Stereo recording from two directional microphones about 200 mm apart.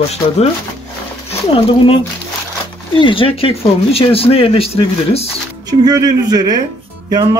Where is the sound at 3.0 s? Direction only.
25° left (ahead or behind).